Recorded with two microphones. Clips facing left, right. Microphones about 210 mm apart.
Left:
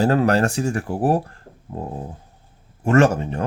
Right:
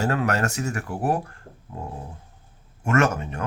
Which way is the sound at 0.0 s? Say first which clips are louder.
Left 6 dB; 35° left (ahead or behind).